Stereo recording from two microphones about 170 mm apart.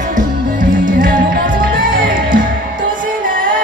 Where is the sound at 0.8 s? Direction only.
50° right (ahead or behind).